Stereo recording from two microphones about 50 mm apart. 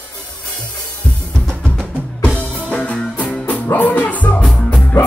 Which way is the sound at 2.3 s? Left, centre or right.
Left.